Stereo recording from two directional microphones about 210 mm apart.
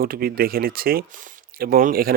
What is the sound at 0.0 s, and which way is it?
Speech, 45° right (ahead or behind).